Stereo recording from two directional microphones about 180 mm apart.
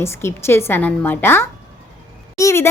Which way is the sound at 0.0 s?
15° left (ahead or behind).